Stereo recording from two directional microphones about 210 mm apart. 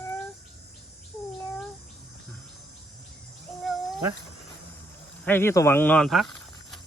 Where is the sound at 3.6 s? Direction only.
Centre (ahead or behind).